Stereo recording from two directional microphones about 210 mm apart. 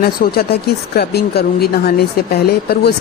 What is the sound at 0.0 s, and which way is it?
Speech, 45° left (ahead or behind).